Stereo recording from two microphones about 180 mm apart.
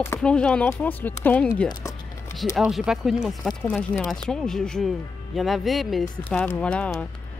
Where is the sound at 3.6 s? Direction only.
10° left (ahead or behind).